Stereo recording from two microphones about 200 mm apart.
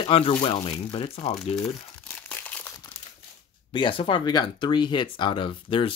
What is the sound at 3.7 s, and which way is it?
Speech, 25° left (ahead or behind).